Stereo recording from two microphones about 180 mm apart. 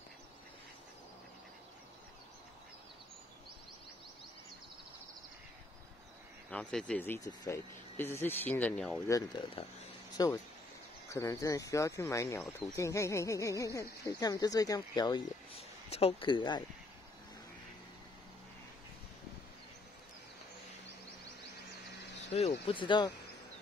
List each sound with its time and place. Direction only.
6.5 s speech: 5° left (ahead or behind)
9.0 s speech: 20° left (ahead or behind)
22.3 s speech: 35° left (ahead or behind)